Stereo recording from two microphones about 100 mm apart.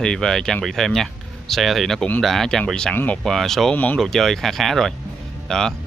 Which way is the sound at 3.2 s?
5° left (ahead or behind).